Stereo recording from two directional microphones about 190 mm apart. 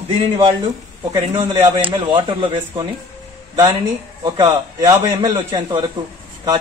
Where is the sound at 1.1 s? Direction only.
20° right (ahead or behind).